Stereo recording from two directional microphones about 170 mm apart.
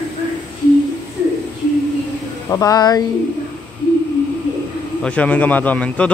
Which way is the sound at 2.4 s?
20° left (ahead or behind).